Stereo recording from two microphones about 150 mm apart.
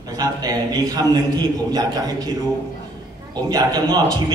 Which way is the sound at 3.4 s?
25° right (ahead or behind).